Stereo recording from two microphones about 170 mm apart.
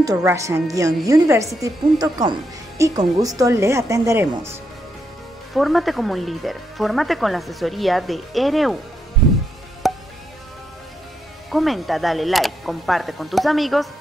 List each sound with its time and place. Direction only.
0.0 s a woman's voice: 20° right (ahead or behind)
5.5 s speech: centre (ahead or behind)
9.8 s music: centre (ahead or behind)
11.5 s speech: centre (ahead or behind)